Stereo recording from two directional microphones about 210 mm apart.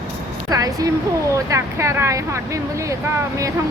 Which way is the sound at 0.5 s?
15° right (ahead or behind).